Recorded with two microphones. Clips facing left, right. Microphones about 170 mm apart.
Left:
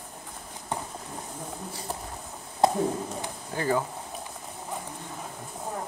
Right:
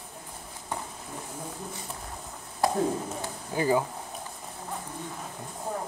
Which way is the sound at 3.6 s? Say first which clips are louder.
Right 2 dB; 15° right (ahead or behind).